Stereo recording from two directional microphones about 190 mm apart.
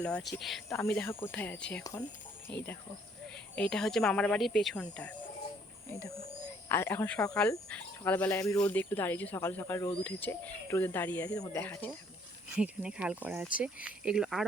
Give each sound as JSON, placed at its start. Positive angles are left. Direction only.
{"t": 0.0, "sound": "speech", "side_deg": 5}
{"t": 3.5, "sound": "speech", "side_deg": 5}
{"t": 5.9, "sound": "speech", "side_deg": 15}
{"t": 12.5, "sound": "speech", "side_deg": -5}